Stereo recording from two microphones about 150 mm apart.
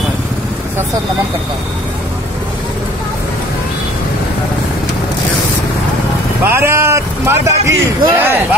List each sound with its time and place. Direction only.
6.4 s speech: 15° right (ahead or behind)